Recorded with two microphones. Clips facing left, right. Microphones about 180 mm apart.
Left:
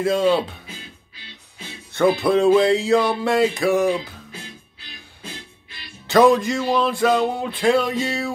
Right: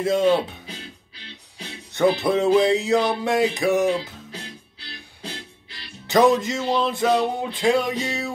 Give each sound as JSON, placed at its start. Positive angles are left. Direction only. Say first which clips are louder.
{"t": 0.0, "sound": "music", "louder": "left 1 dB", "side_deg": -20}
{"t": 1.9, "sound": "music", "louder": "left 2 dB", "side_deg": -20}
{"t": 6.0, "sound": "music", "louder": "left 2 dB", "side_deg": -20}